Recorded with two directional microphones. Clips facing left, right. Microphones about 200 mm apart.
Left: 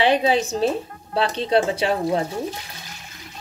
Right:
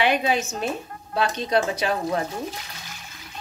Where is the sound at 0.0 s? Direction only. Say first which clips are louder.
Left 4 dB; 30° left (ahead or behind).